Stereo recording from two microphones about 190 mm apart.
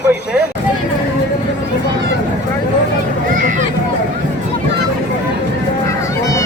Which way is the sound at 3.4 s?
40° right (ahead or behind).